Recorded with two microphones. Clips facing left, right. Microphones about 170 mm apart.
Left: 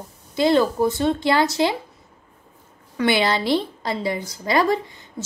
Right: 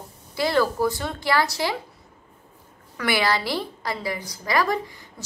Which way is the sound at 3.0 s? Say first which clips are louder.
Left 4 dB; 25° left (ahead or behind).